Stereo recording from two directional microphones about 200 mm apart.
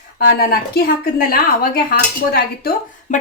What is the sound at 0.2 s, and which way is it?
A woman's voice, 50° left (ahead or behind).